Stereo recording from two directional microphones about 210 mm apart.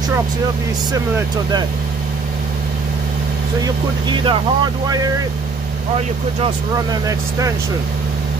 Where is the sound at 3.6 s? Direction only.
20° right (ahead or behind).